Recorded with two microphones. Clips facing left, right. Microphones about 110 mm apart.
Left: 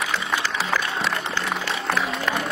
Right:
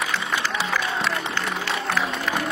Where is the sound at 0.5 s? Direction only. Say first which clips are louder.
Even; centre (ahead or behind).